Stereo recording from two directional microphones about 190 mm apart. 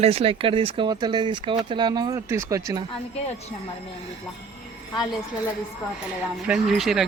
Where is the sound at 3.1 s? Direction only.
35° left (ahead or behind).